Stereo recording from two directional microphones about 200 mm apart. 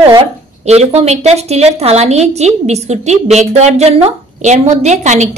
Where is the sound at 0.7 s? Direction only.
35° right (ahead or behind).